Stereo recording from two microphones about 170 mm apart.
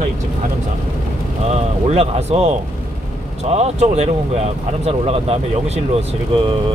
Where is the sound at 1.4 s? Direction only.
40° right (ahead or behind).